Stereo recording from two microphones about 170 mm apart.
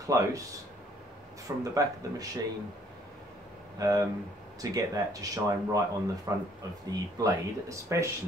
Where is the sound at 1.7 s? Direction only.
20° right (ahead or behind).